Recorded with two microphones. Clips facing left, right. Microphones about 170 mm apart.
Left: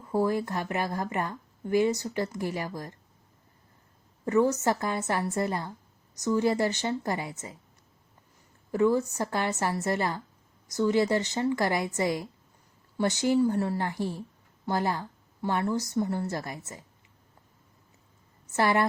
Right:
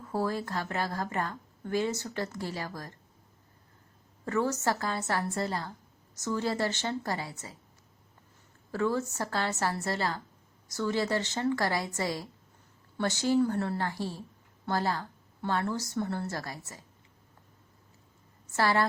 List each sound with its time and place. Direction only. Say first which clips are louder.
0.1 s speech: left 5 dB; 15° left (ahead or behind)
4.3 s speech: left 5 dB; 20° left (ahead or behind)
8.7 s speech: left 5 dB; 15° left (ahead or behind)
18.5 s a woman's voice: left 2 dB; 20° left (ahead or behind)